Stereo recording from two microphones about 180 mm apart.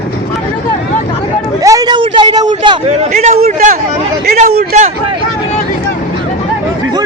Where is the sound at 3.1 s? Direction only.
40° right (ahead or behind).